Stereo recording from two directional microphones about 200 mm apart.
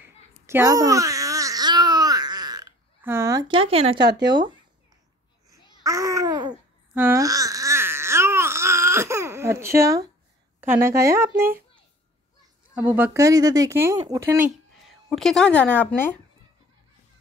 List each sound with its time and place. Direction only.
0.0 s babbling: 10° right (ahead or behind)
5.9 s babbling: 15° right (ahead or behind)
10.6 s speech: 10° right (ahead or behind)
12.7 s speech: 10° right (ahead or behind)
15.0 s speech: centre (ahead or behind)